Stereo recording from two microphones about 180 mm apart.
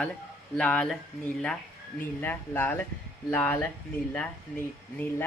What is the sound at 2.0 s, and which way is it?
Speech, 10° left (ahead or behind).